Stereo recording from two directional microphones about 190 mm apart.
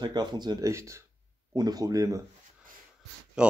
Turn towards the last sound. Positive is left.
turn(degrees=-5)  # may be behind; listen again after turning